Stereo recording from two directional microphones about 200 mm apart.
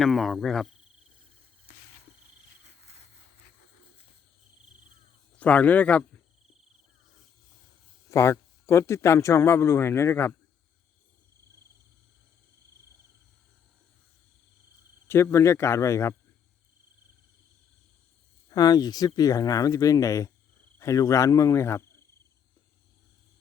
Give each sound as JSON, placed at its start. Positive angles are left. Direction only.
{"t": 0.0, "sound": "cricket", "side_deg": 0}
{"t": 2.6, "sound": "cricket", "side_deg": -35}
{"t": 5.4, "sound": "speech", "side_deg": 5}
{"t": 8.1, "sound": "speech", "side_deg": 15}
{"t": 15.0, "sound": "speech", "side_deg": 10}
{"t": 18.5, "sound": "speech", "side_deg": 20}